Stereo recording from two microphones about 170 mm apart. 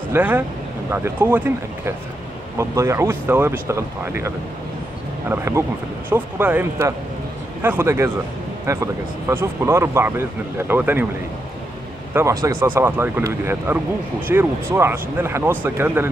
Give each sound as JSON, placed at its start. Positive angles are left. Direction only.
{"t": 0.1, "sound": "speech", "side_deg": -10}
{"t": 5.3, "sound": "speech", "side_deg": -15}
{"t": 12.1, "sound": "speech", "side_deg": -15}